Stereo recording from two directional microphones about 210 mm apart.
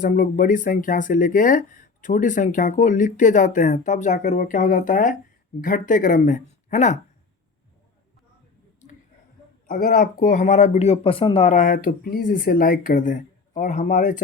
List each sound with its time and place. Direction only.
0.0 s speech: 40° left (ahead or behind)
9.6 s speech: 40° left (ahead or behind)